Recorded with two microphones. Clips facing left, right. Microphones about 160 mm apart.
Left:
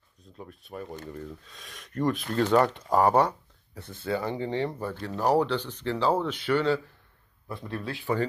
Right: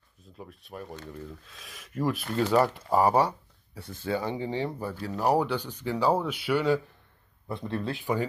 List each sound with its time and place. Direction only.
0.4 s speech: centre (ahead or behind)
7.4 s speech: 20° right (ahead or behind)